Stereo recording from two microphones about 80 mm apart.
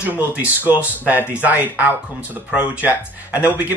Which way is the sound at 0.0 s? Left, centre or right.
Right.